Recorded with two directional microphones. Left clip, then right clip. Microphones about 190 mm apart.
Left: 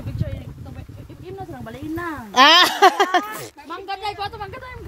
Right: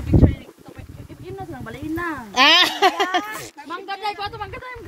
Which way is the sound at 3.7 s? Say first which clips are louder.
Right 1 dB; 60° left (ahead or behind).